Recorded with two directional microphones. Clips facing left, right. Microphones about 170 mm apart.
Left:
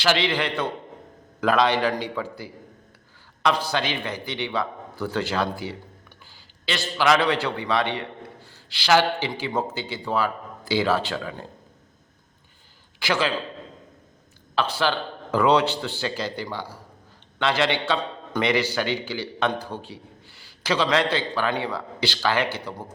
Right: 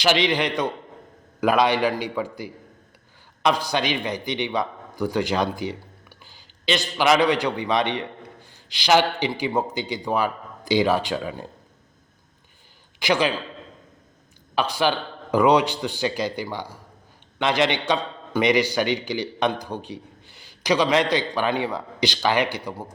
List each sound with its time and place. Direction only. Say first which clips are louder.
0.0 s a man's voice: right 2 dB; 15° right (ahead or behind)
13.0 s a man's voice: right 3 dB; 15° right (ahead or behind)
14.5 s a man's voice: right 2 dB; 15° right (ahead or behind)